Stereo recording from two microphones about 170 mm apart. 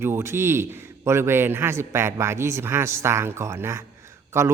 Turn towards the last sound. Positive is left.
turn(degrees=-15)  # may be behind; listen again after turning